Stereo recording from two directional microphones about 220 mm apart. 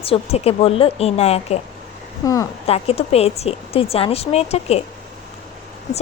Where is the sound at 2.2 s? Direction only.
15° left (ahead or behind).